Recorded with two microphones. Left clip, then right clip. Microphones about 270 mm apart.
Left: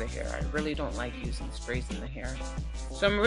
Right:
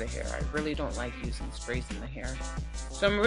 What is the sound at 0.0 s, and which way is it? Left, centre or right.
Speech, centre.